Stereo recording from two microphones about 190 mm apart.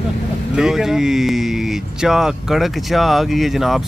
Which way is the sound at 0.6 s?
Centre (ahead or behind).